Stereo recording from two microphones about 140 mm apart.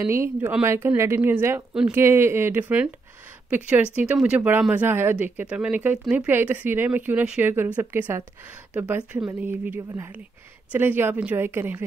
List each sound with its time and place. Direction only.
0.0 s speech: 20° right (ahead or behind)
1.7 s speech: 5° right (ahead or behind)
2.0 s speech: 15° right (ahead or behind)